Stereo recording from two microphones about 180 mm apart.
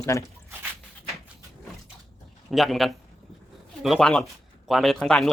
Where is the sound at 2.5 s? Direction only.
Centre (ahead or behind).